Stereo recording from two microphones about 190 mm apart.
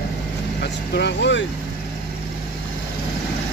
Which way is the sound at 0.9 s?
65° left (ahead or behind).